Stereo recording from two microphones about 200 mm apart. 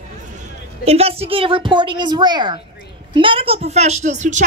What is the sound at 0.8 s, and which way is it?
A woman's voice, 30° right (ahead or behind).